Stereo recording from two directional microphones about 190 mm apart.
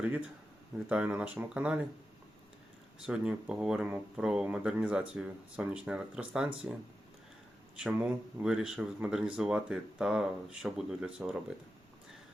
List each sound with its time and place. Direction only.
0.9 s speech: 5° right (ahead or behind)
3.1 s speech: 5° right (ahead or behind)
7.8 s speech: 5° right (ahead or behind)